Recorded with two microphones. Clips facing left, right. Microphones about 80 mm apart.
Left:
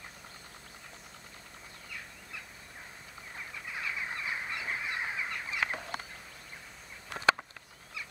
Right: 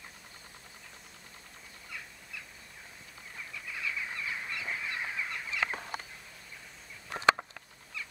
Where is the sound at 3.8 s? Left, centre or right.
Left.